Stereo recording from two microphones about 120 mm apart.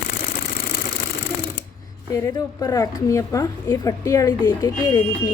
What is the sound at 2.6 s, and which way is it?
A woman's voice, 30° left (ahead or behind).